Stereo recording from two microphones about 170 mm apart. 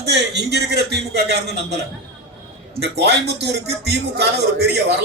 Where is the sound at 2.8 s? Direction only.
75° right (ahead or behind).